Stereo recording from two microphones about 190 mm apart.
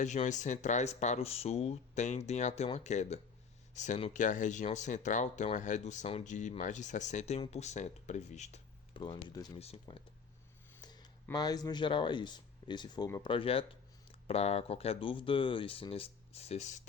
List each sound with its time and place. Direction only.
0.0 s speech: 40° left (ahead or behind)
9.0 s speech: 20° left (ahead or behind)
9.6 s speech: 35° left (ahead or behind)
10.8 s speech: 20° left (ahead or behind); by 16.8 s 35° left (ahead or behind)